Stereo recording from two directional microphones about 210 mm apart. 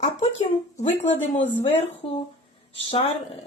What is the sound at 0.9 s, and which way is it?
Speech, 60° left (ahead or behind).